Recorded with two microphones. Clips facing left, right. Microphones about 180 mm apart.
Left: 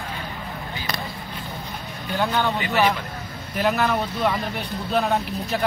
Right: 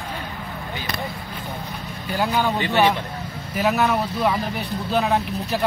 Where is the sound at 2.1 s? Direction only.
10° right (ahead or behind).